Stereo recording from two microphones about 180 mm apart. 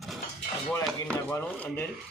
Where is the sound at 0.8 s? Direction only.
10° left (ahead or behind).